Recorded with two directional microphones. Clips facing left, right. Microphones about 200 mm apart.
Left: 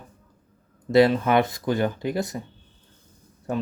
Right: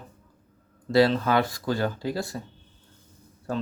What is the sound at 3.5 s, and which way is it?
Speech, 20° left (ahead or behind).